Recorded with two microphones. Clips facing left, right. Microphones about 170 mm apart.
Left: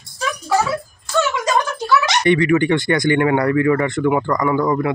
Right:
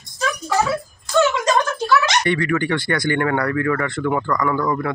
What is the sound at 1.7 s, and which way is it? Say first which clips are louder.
Speech: even; 15° left (ahead or behind).